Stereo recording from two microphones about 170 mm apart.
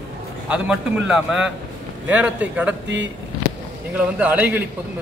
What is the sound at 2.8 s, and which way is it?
Speech, 90° right.